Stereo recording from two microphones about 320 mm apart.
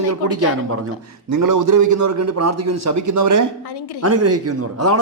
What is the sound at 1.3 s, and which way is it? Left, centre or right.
A man's voice, right.